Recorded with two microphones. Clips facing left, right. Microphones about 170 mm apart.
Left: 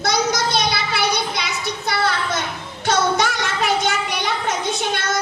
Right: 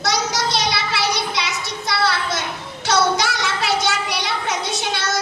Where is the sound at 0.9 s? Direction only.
75° right (ahead or behind).